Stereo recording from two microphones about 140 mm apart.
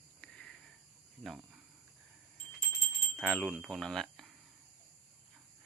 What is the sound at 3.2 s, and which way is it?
Chime, 5° left (ahead or behind).